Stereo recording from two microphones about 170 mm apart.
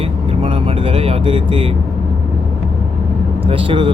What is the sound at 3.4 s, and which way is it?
Speech, 35° right (ahead or behind).